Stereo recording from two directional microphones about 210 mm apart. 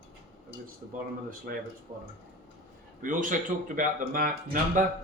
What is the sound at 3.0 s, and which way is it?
A man's voice, 40° right (ahead or behind).